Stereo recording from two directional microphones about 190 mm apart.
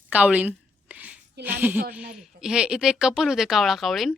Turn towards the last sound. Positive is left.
turn(degrees=0)  # may be behind; listen again after turning